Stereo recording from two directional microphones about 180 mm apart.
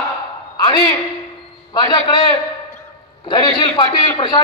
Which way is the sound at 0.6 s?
25° left (ahead or behind).